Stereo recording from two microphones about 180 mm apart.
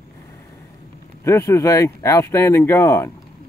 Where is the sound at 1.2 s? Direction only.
15° left (ahead or behind).